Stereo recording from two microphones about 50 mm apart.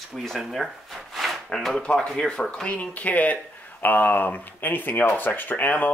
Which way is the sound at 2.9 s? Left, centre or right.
Left.